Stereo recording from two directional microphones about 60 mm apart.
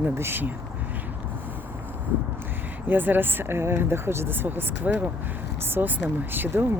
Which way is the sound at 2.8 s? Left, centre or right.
Right.